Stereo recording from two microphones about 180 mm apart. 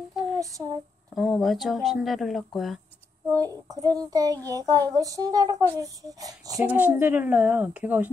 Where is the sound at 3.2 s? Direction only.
20° right (ahead or behind).